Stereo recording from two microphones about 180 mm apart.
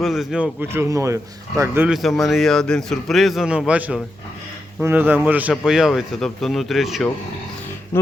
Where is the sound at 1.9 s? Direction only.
Centre (ahead or behind).